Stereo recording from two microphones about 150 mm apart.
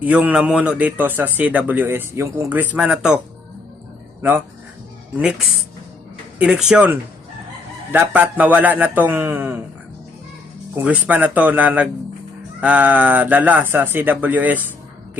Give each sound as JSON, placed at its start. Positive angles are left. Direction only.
{"t": 0.0, "sound": "a man's voice", "side_deg": -10}
{"t": 4.2, "sound": "speech", "side_deg": -15}
{"t": 6.4, "sound": "a man's voice", "side_deg": -5}
{"t": 10.8, "sound": "a man's voice", "side_deg": -10}